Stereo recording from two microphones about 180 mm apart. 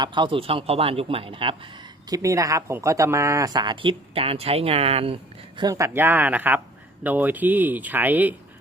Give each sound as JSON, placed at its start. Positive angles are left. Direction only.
{"t": 0.0, "sound": "speech", "side_deg": -25}
{"t": 2.0, "sound": "speech", "side_deg": -20}
{"t": 5.5, "sound": "speech", "side_deg": -20}